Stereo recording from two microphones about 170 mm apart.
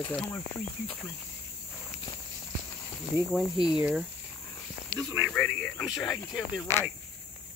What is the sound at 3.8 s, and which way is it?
Speech, 5° right (ahead or behind).